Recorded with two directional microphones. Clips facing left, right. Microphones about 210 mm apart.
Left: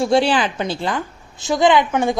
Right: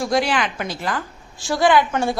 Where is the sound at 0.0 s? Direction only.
30° left (ahead or behind).